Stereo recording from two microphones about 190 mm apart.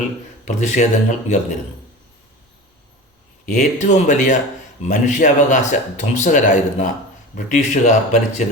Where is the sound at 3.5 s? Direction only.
40° left (ahead or behind).